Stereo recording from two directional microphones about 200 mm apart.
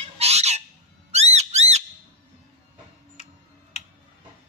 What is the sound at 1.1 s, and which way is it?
Music, 35° right (ahead or behind).